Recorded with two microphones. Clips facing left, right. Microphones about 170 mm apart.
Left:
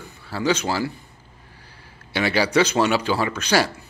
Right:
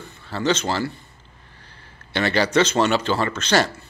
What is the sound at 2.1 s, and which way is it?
Speech, 10° left (ahead or behind).